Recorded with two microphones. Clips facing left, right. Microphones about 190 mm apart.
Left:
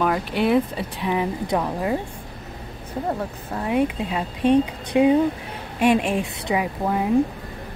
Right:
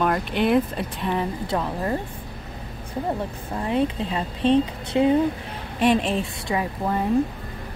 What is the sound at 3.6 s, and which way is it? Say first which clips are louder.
Speech: left 1 dB; 10° left (ahead or behind).